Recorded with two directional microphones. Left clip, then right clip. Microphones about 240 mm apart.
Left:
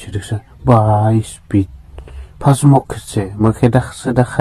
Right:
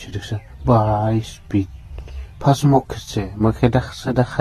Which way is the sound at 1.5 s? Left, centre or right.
Centre.